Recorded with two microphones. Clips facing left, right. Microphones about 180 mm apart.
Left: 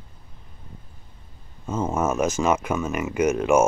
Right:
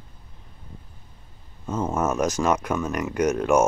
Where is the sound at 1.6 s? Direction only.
5° left (ahead or behind).